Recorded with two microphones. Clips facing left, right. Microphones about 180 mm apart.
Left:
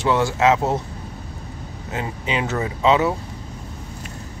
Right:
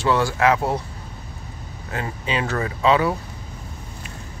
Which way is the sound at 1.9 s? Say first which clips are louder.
Left 1 dB; 20° left (ahead or behind).